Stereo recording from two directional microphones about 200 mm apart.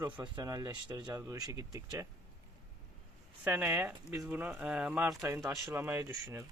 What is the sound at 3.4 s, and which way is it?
Speech, 10° right (ahead or behind).